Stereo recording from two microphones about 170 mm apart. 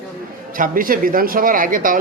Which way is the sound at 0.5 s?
55° right (ahead or behind).